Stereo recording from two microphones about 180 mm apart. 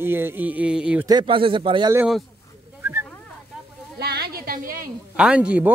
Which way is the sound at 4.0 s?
60° right (ahead or behind).